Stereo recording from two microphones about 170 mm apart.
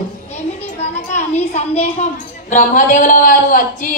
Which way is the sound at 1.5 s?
40° left (ahead or behind).